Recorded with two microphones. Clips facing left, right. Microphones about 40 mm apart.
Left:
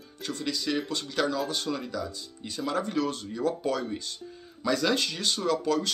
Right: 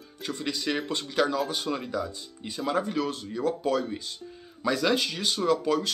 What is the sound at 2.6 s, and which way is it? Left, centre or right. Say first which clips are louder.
Speech: right 1 dB; centre.